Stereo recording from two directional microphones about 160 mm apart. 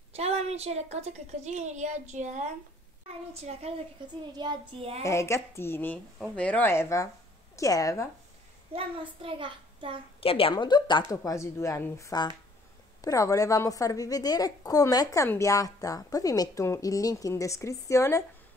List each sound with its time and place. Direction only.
0.1 s a woman's voice: 40° right (ahead or behind)
4.4 s a child's voice: 30° right (ahead or behind)
5.0 s a woman's voice: 15° left (ahead or behind)
8.7 s a child's voice: 35° right (ahead or behind)
10.2 s a woman's voice: 35° left (ahead or behind); by 18.2 s 20° left (ahead or behind)